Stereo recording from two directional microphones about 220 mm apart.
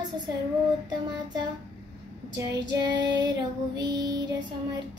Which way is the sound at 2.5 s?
50° right (ahead or behind).